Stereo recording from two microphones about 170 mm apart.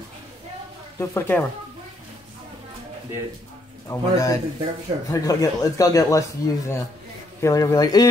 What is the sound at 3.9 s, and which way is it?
Speech, 20° left (ahead or behind).